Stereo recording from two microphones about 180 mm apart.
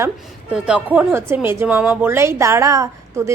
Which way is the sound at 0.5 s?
5° right (ahead or behind).